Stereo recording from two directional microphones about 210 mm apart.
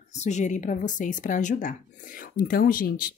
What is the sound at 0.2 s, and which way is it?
A woman's voice, 35° left (ahead or behind).